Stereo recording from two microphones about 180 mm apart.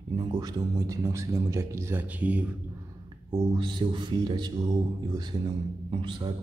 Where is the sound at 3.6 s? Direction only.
25° right (ahead or behind).